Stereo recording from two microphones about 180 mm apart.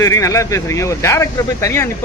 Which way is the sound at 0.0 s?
15° left (ahead or behind).